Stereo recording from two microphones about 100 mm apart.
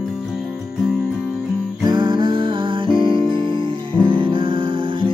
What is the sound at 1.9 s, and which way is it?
Music, 50° right (ahead or behind).